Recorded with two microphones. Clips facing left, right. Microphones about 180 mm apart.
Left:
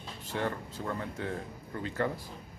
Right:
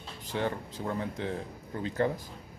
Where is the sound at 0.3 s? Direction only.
25° right (ahead or behind).